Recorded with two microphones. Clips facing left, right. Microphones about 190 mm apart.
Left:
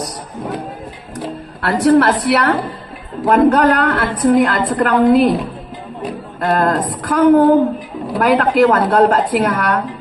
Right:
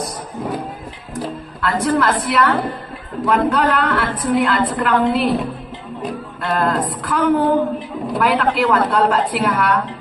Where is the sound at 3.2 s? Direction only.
45° left (ahead or behind).